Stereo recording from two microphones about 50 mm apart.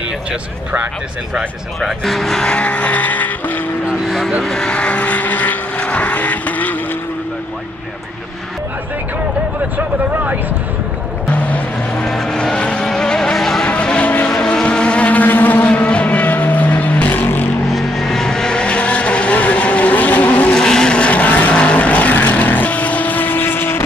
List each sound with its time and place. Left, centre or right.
1.8 s speech: centre
2.5 s vehicle: left
4.4 s vehicle: centre; by 6.8 s left
11.3 s music: left
12.0 s vehicle: centre
12.5 s vehicle: left
12.8 s vehicle: centre
13.7 s vehicle: left
14.3 s vehicle: centre; by 15.7 s left
15.7 s vehicle: left
17.7 s vehicle: centre; by 20.5 s left
20.5 s vehicle: centre; by 23.8 s left